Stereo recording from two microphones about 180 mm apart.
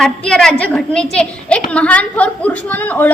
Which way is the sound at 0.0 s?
5° left (ahead or behind).